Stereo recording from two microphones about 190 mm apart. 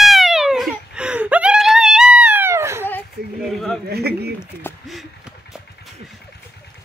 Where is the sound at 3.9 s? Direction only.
55° right (ahead or behind).